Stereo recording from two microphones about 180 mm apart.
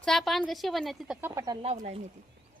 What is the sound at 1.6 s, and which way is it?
Speech, 35° right (ahead or behind).